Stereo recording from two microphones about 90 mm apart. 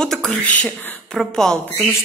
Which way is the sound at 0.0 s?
5° left (ahead or behind).